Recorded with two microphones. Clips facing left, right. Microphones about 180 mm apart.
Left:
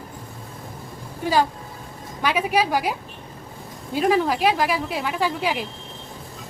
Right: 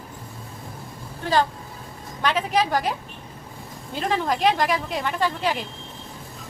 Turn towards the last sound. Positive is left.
turn(degrees=10)  # may be behind; listen again after turning